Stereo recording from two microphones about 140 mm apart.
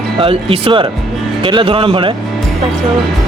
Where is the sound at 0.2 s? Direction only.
40° right (ahead or behind).